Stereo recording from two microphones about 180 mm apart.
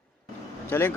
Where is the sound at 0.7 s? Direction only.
10° left (ahead or behind).